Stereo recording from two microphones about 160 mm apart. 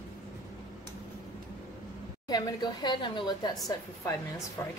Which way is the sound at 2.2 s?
25° left (ahead or behind).